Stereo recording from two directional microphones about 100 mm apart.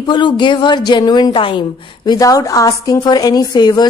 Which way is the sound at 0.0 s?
50° left (ahead or behind).